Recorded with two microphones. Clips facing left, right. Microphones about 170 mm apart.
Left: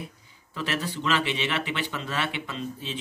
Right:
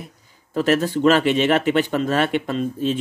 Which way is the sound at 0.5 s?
45° right (ahead or behind).